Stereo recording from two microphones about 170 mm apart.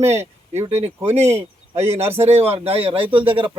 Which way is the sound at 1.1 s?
40° right (ahead or behind).